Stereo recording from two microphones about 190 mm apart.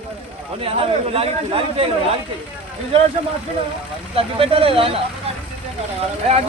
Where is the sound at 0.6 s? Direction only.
30° right (ahead or behind).